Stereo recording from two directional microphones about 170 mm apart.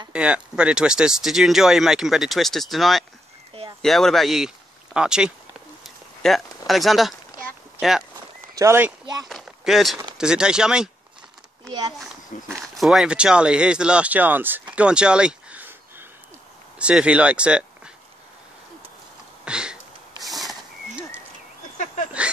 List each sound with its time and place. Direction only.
0.1 s speech: 5° right (ahead or behind)
5.9 s a sound: centre (ahead or behind)
6.7 s speech: centre (ahead or behind)
8.5 s speech: 15° right (ahead or behind)
9.3 s speech: centre (ahead or behind)
12.4 s speech: centre (ahead or behind)
19.4 s a sound: 5° right (ahead or behind)